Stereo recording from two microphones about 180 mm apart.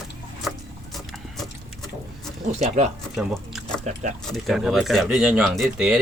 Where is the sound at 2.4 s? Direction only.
35° right (ahead or behind).